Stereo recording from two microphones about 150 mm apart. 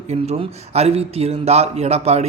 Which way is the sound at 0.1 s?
45° right (ahead or behind).